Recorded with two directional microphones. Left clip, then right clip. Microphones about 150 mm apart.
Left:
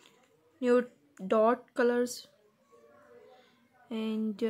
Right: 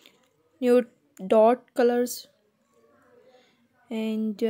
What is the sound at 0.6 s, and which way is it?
Speech, 40° right (ahead or behind).